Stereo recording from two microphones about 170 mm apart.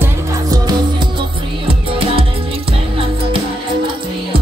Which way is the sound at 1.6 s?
30° right (ahead or behind).